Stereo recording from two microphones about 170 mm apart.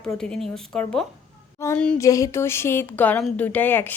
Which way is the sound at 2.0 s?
20° left (ahead or behind).